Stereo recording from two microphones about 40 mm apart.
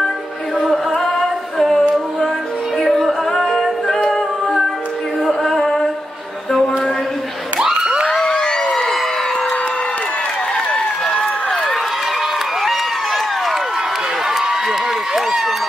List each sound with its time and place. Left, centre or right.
0.6 s music: centre
0.9 s a capella: centre
5.2 s music: centre
8.1 s a sound: centre
10.7 s run: left
12.6 s crowd: centre
14.2 s a sound: centre